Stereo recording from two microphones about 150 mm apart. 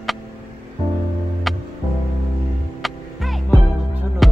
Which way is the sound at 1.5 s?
Centre (ahead or behind).